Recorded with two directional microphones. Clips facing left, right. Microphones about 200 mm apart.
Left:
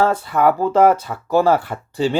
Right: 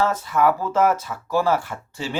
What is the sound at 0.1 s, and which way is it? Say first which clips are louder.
Speech: left 3 dB; 30° left (ahead or behind).